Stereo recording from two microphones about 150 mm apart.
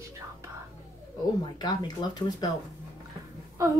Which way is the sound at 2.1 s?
30° left (ahead or behind).